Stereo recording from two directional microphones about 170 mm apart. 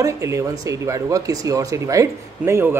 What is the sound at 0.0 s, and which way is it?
Speech, 15° right (ahead or behind).